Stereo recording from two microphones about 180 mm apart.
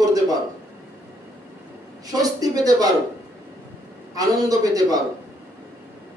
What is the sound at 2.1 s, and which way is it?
Speech, 20° right (ahead or behind).